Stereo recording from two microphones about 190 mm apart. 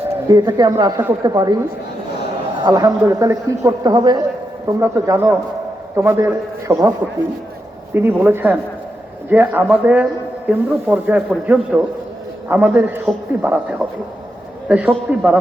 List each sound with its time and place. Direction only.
0.3 s a woman's voice: 20° right (ahead or behind)
2.6 s a man's voice: 20° right (ahead or behind)
7.9 s a man's voice: 10° right (ahead or behind)